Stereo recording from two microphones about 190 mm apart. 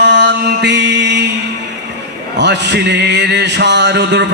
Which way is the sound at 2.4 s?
65° right (ahead or behind).